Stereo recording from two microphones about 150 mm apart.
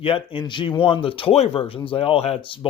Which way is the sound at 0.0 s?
35° left (ahead or behind).